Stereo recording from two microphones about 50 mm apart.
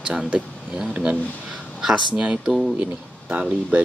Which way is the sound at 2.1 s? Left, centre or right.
Right.